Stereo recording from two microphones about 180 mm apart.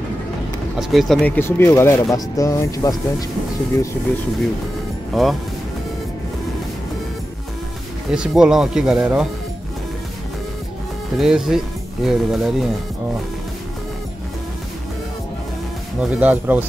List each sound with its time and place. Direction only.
0.7 s speech: centre (ahead or behind); by 3.3 s 20° left (ahead or behind)
5.1 s speech: centre (ahead or behind)
8.1 s speech: 5° right (ahead or behind)
11.1 s speech: 5° right (ahead or behind)
16.0 s speech: 10° right (ahead or behind)